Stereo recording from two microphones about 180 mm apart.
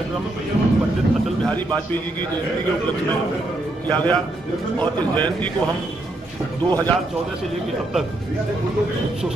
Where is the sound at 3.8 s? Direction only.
10° left (ahead or behind).